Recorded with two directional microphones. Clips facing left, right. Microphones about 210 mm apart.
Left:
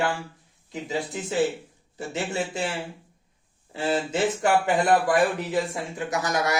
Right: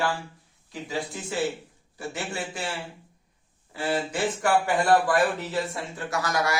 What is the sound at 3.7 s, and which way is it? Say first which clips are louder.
Speech: left 2 dB; 25° left (ahead or behind).